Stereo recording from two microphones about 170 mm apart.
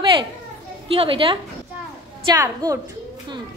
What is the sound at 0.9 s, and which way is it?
Speech, 30° right (ahead or behind).